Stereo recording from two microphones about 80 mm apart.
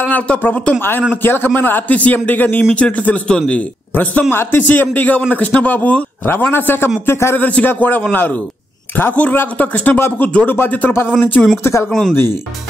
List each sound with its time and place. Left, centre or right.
0.1 s a man's voice: left
4.3 s a man's voice: left
7.3 s a man's voice: left